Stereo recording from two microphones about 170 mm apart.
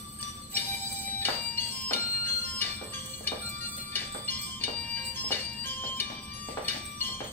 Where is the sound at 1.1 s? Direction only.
10° left (ahead or behind).